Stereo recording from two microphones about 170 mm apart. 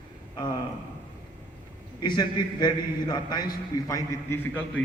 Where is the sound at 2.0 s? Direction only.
25° left (ahead or behind).